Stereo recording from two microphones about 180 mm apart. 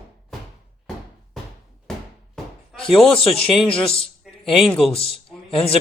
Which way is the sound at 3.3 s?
Centre (ahead or behind).